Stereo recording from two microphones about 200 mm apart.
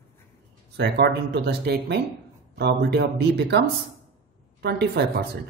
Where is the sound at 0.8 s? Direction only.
55° right (ahead or behind).